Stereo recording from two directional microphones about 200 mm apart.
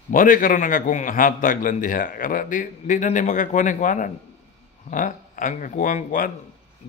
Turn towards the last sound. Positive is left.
turn(degrees=40)  # may be behind; listen again after turning